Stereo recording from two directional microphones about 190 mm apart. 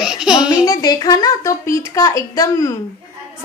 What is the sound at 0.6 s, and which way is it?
A woman's voice, 20° left (ahead or behind).